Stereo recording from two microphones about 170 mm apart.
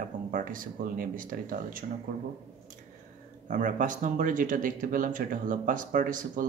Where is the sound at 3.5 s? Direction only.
50° right (ahead or behind).